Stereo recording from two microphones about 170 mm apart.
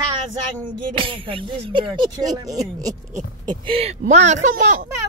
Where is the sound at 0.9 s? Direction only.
30° right (ahead or behind).